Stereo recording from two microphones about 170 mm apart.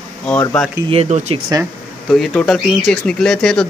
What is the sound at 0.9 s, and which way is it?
Speech, 40° right (ahead or behind).